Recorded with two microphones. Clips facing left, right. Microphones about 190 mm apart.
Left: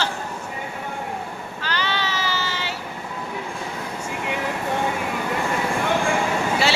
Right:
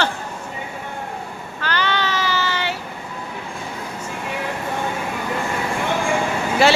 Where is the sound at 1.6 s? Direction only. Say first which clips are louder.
Right 4 dB; 60° right (ahead or behind).